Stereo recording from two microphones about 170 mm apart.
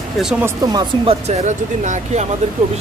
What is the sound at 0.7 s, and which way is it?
Speech, 40° right (ahead or behind).